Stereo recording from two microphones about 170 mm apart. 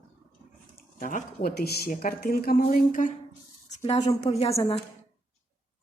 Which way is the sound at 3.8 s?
35° left (ahead or behind).